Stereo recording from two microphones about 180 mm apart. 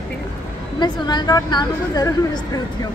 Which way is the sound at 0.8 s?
25° left (ahead or behind).